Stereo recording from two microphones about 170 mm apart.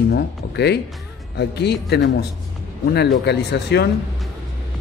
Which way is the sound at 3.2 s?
80° left.